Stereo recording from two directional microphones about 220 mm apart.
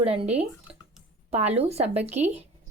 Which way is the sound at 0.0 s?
25° right (ahead or behind).